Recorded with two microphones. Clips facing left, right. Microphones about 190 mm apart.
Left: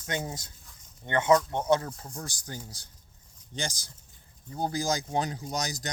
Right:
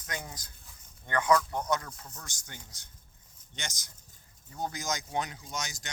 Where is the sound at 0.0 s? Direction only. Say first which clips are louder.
Left 7 dB; 25° left (ahead or behind).